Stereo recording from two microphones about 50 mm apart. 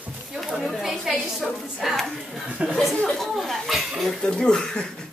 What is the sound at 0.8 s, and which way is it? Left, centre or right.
A woman's voice, centre.